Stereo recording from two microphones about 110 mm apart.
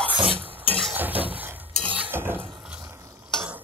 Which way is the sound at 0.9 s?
15° right (ahead or behind).